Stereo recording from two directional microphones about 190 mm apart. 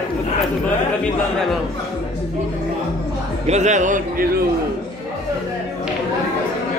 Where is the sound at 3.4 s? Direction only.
35° right (ahead or behind).